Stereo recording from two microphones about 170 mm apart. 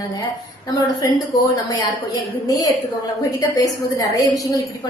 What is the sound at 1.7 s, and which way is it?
A woman's voice, 20° left (ahead or behind).